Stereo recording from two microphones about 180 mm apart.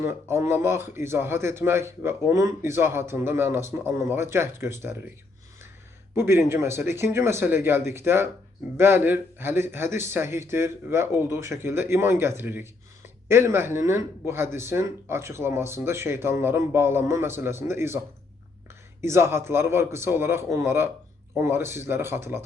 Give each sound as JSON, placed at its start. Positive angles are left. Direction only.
{"t": 0.0, "sound": "a man's voice", "side_deg": -15}
{"t": 6.1, "sound": "a man's voice", "side_deg": -15}
{"t": 19.0, "sound": "a man's voice", "side_deg": -15}